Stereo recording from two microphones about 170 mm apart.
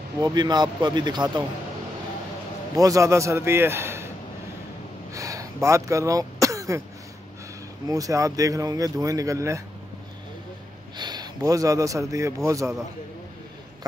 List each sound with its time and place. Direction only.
0.2 s speech: 25° right (ahead or behind)
2.7 s a man's voice: 20° right (ahead or behind)
5.1 s throat clearing: 20° right (ahead or behind)
7.9 s speech: 20° right (ahead or behind)
11.0 s a man's voice: 25° right (ahead or behind)